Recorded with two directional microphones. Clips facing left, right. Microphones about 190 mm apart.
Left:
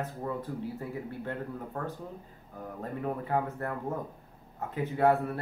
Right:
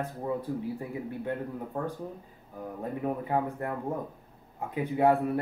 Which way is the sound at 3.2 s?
15° right (ahead or behind).